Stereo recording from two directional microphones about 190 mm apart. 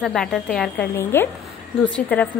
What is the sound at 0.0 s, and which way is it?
A woman's voice, 5° left (ahead or behind).